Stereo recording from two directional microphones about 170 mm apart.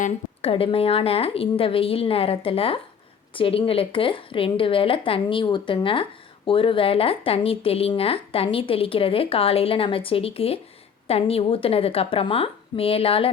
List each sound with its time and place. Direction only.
0.0 s a woman's voice: 35° left (ahead or behind)